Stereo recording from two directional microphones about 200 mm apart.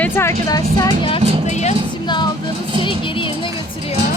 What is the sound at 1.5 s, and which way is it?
Vehicle, 35° left (ahead or behind).